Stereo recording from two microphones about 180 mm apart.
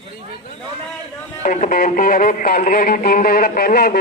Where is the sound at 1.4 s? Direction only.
45° left (ahead or behind).